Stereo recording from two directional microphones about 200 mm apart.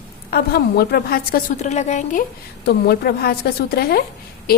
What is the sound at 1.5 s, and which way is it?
Speech, 35° left (ahead or behind).